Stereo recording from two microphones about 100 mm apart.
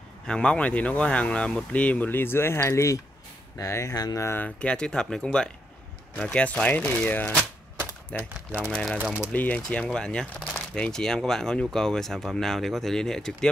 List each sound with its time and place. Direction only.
0.3 s speech: 10° left (ahead or behind); by 4.5 s 25° left (ahead or behind)
4.6 s speech: 10° left (ahead or behind)
8.9 s speech: 10° right (ahead or behind)
9.3 s speech: 15° left (ahead or behind)